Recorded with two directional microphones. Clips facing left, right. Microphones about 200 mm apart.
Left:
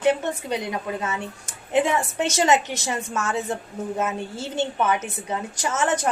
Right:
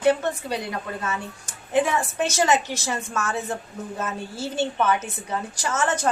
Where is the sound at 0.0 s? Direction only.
20° left (ahead or behind).